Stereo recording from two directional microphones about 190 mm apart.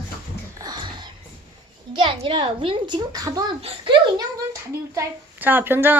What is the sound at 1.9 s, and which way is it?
A woman's voice, 30° right (ahead or behind).